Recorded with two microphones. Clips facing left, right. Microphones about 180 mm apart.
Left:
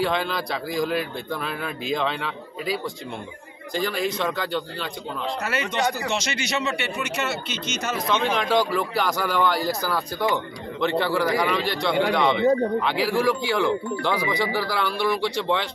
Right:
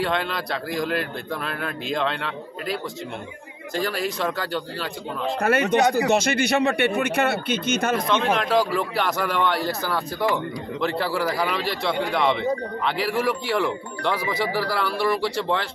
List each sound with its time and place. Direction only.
0.0 s speech: centre (ahead or behind)
5.4 s speech: 55° right (ahead or behind)
8.1 s speech: centre (ahead or behind)